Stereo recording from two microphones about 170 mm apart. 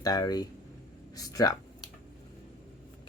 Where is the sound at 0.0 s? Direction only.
20° left (ahead or behind).